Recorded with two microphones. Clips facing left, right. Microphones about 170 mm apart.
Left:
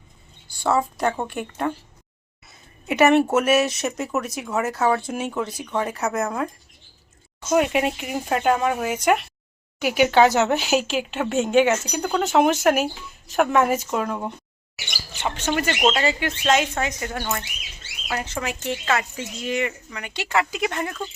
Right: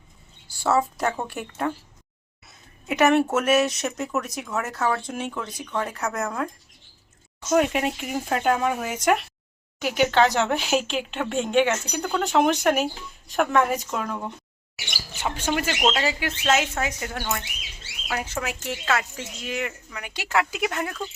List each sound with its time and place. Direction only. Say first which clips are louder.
0.4 s a woman's voice: even; 5° right (ahead or behind)
2.5 s a sound: left 2 dB; centre (ahead or behind)
3.3 s speech: left 2 dB; 5° left (ahead or behind)
7.5 s speech: left 1 dB; 5° left (ahead or behind)
15.2 s speech: left 2 dB; 10° right (ahead or behind)